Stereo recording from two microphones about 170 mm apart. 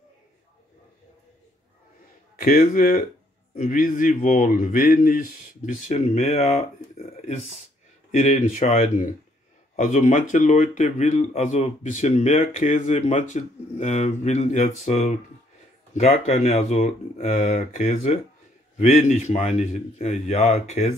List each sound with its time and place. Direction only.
2.4 s speech: 60° left (ahead or behind); by 20.9 s 40° left (ahead or behind)